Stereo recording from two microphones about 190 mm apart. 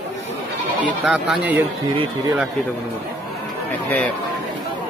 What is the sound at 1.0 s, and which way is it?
Speech, 5° right (ahead or behind).